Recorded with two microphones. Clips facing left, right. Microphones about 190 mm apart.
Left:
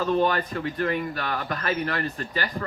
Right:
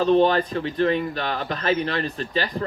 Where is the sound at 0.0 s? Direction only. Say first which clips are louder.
Right 5 dB; 25° right (ahead or behind).